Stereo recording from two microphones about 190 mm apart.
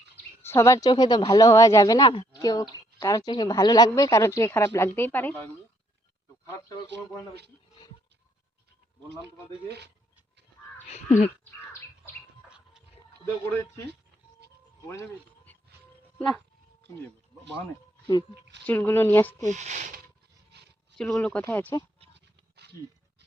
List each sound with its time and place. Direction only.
0.4 s a woman's voice: 15° left (ahead or behind)
9.6 s speech: 60° right (ahead or behind)
10.8 s speech: 35° left (ahead or behind)
12.5 s music: 5° right (ahead or behind)
14.8 s speech: 15° left (ahead or behind)
16.1 s speech: centre (ahead or behind)
18.6 s a woman's voice: 10° left (ahead or behind)
19.5 s speech: 40° right (ahead or behind)
20.9 s a woman's voice: 5° left (ahead or behind)
22.1 s a sound: 60° right (ahead or behind)